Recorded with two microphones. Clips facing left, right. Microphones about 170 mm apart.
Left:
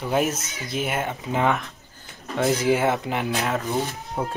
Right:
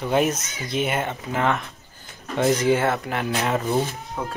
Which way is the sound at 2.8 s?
15° left (ahead or behind).